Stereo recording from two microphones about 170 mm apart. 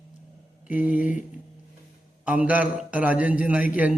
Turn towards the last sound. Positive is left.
turn(degrees=-10)  # may be behind; listen again after turning